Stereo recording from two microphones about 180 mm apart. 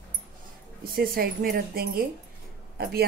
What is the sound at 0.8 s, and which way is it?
A woman's voice, 55° right (ahead or behind).